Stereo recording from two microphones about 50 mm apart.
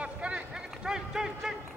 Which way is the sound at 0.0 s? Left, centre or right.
Right.